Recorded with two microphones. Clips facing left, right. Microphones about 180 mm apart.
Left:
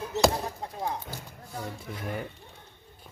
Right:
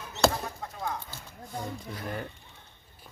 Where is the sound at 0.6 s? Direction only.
30° left (ahead or behind).